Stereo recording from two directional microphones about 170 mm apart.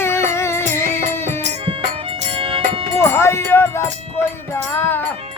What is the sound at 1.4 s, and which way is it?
Music, 35° right (ahead or behind).